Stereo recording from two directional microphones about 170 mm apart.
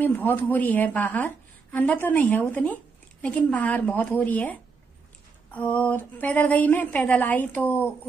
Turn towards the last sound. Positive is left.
turn(degrees=10)  # may be behind; listen again after turning